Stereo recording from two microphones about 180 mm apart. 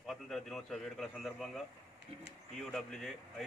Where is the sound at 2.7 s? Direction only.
Centre (ahead or behind).